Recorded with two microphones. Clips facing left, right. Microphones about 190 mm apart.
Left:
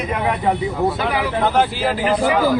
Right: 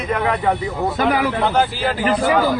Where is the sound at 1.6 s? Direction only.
Centre (ahead or behind).